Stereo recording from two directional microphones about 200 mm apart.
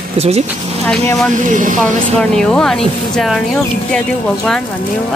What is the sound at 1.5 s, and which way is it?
Speech, 40° right (ahead or behind).